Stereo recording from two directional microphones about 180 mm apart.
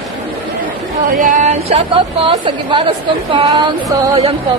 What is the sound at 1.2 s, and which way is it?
A woman's voice, 45° right (ahead or behind).